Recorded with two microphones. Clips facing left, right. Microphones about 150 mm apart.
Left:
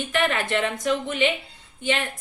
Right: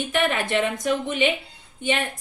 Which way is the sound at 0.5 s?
10° right (ahead or behind).